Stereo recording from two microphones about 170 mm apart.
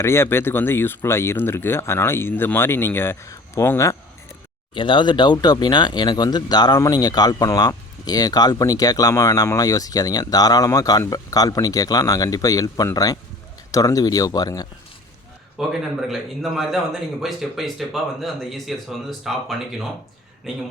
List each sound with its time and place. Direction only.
0.0 s speech: 15° left (ahead or behind)
4.7 s speech: 30° left (ahead or behind)
15.5 s a man's voice: 5° right (ahead or behind)